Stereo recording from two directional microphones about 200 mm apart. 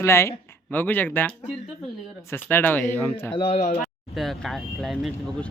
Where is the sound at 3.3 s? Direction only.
25° left (ahead or behind).